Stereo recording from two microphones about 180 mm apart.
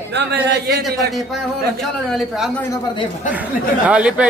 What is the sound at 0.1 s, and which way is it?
A man's voice, 70° right (ahead or behind).